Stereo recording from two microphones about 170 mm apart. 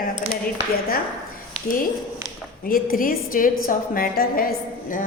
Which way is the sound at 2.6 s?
55° left (ahead or behind).